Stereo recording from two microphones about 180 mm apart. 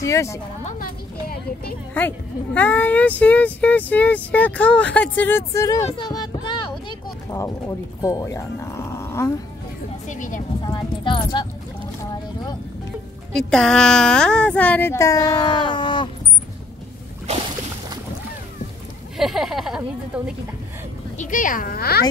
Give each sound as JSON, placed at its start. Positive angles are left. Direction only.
{"t": 0.0, "sound": "speech", "side_deg": 15}
{"t": 0.7, "sound": "a sound", "side_deg": 50}
{"t": 2.0, "sound": "speech", "side_deg": 10}
{"t": 5.9, "sound": "a sound", "side_deg": 25}
{"t": 8.0, "sound": "speech", "side_deg": 20}
{"t": 10.0, "sound": "a child's voice", "side_deg": 45}
{"t": 10.7, "sound": "speech", "side_deg": 25}
{"t": 13.3, "sound": "speech", "side_deg": 0}
{"t": 19.1, "sound": "speech", "side_deg": 0}
{"t": 21.2, "sound": "a child's voice", "side_deg": 45}